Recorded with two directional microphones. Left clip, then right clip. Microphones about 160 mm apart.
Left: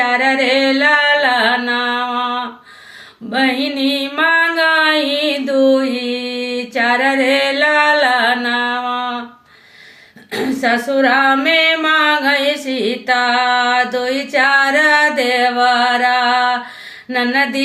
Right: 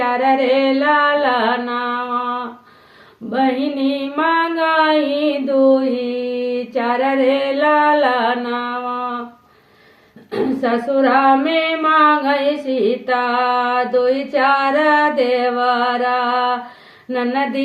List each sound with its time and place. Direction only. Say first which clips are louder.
0.2 s carnatic music: left 1 dB; 20° left (ahead or behind)
3.2 s music: left 2 dB; 20° left (ahead or behind)
10.3 s female singing: left 2 dB; 20° left (ahead or behind)